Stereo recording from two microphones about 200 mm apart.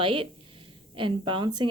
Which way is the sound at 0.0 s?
25° right (ahead or behind).